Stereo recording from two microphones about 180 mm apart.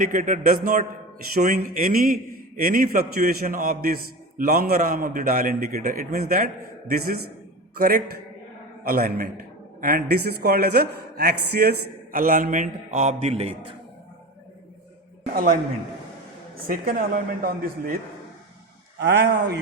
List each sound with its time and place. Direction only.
0.0 s a man's voice: 45° right (ahead or behind)
15.3 s a man's voice: 50° right (ahead or behind)
16.6 s a man's voice: 55° right (ahead or behind)
18.9 s speech: 70° right (ahead or behind)